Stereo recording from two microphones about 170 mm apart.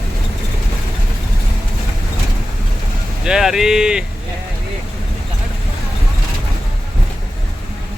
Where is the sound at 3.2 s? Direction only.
5° right (ahead or behind).